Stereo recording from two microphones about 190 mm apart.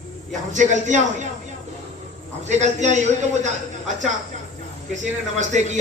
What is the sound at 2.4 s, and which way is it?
Speech, 35° right (ahead or behind).